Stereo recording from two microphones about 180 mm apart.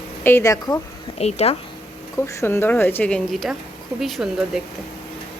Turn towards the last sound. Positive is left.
turn(degrees=0)  # may be behind; listen again after turning